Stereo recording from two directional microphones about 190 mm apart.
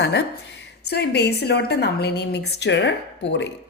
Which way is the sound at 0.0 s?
65° left (ahead or behind).